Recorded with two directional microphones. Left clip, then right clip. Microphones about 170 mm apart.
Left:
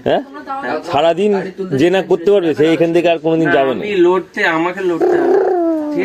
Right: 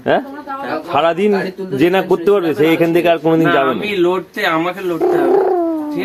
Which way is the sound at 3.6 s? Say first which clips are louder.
Left 2 dB; 20° right (ahead or behind).